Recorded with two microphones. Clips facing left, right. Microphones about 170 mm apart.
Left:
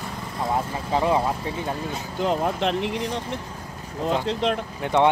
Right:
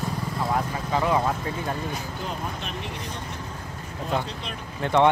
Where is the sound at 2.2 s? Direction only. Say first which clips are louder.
Left 14 dB; 85° left.